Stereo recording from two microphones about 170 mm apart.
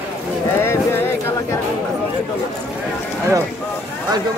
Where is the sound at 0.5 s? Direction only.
15° left (ahead or behind).